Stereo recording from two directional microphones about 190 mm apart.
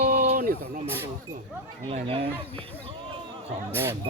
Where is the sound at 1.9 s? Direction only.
30° right (ahead or behind).